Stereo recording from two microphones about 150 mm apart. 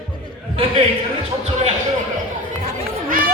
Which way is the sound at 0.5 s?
40° right (ahead or behind).